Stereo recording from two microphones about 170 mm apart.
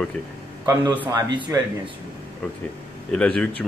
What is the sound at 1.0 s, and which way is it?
Speech, 30° right (ahead or behind).